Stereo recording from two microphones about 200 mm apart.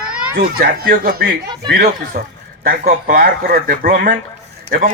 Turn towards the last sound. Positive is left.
turn(degrees=-45)  # may be behind; listen again after turning